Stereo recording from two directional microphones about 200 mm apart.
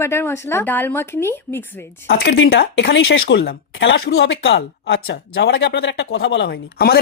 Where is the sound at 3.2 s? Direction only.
50° left (ahead or behind).